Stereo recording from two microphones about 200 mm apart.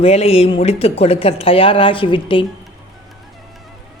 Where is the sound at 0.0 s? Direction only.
30° left (ahead or behind).